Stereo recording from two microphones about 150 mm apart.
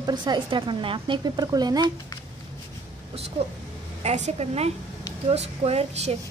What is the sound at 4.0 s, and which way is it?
A woman's voice, 45° right (ahead or behind).